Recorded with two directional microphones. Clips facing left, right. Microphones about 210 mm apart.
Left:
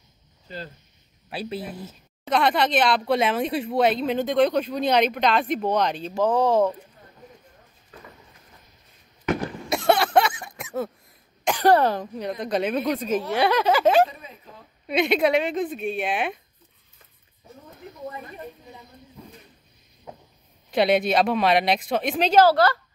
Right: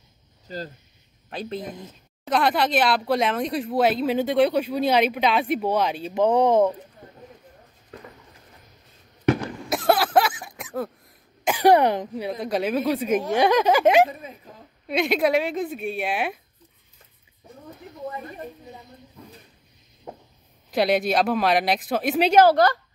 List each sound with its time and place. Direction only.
0.5 s speech: 40° right (ahead or behind)
1.3 s a woman's voice: 5° left (ahead or behind)
6.1 s speech: 20° right (ahead or behind)
9.7 s cough: centre (ahead or behind)
11.4 s speech: 10° right (ahead or behind)
12.3 s a woman's voice: 5° right (ahead or behind)
14.9 s a woman's voice: centre (ahead or behind)
20.7 s a woman's voice: centre (ahead or behind); by 22.8 s 15° right (ahead or behind)